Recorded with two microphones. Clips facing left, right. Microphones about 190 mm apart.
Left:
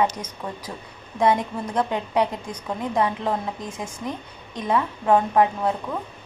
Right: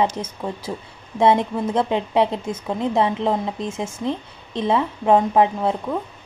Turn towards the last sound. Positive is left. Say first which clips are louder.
# right 2 dB
turn(degrees=-20)  # may be behind; listen again after turning